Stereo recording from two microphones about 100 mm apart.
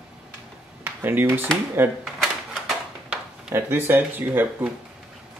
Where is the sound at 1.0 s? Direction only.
20° right (ahead or behind).